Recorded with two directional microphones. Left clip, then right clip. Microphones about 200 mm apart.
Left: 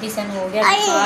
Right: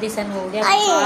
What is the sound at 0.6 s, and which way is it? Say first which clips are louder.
Speech: even; 65° right (ahead or behind).